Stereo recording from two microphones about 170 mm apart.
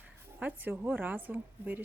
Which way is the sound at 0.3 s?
10° right (ahead or behind).